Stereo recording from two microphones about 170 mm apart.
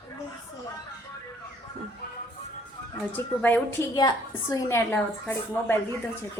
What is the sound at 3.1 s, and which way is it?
A woman's voice, 10° left (ahead or behind).